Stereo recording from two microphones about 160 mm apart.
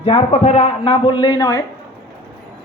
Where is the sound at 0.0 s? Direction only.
40° left (ahead or behind); by 1.6 s 25° left (ahead or behind).